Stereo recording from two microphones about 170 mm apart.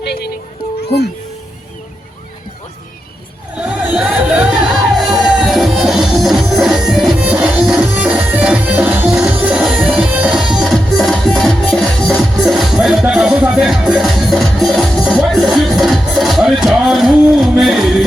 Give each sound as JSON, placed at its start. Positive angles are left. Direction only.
{"t": 0.0, "sound": "music", "side_deg": 75}
{"t": 3.6, "sound": "music", "side_deg": -10}